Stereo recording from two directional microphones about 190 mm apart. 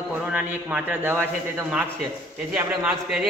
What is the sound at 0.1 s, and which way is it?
A man's voice, 5° right (ahead or behind).